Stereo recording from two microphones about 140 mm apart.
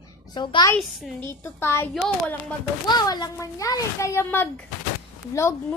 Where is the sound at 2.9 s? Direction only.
30° left (ahead or behind).